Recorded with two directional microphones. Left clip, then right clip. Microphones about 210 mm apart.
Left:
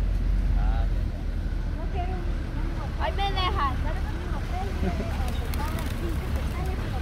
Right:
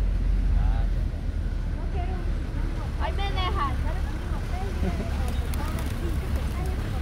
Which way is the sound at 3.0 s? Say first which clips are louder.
Left 3 dB; 50° left (ahead or behind).